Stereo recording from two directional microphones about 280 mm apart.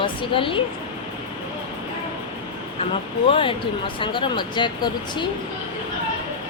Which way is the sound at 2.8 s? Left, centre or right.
Centre.